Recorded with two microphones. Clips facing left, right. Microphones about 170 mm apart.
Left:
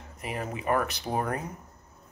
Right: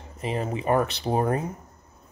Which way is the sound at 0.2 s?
25° right (ahead or behind).